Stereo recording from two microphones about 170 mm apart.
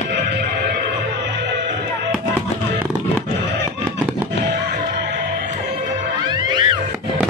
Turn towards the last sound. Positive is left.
turn(degrees=-25)  # may be behind; listen again after turning